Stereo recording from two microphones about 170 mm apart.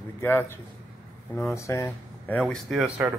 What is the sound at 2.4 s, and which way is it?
Speech, centre (ahead or behind).